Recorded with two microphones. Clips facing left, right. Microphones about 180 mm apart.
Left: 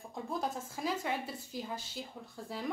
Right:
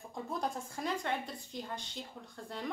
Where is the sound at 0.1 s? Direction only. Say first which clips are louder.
Even; centre (ahead or behind).